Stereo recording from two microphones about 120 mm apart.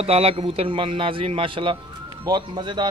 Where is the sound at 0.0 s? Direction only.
55° right (ahead or behind).